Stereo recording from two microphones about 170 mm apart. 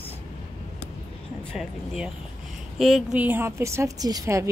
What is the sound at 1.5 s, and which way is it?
A woman's voice, centre (ahead or behind).